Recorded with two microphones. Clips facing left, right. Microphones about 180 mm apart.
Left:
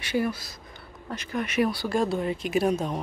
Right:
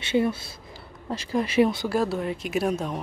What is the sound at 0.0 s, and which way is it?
Speech, 25° right (ahead or behind).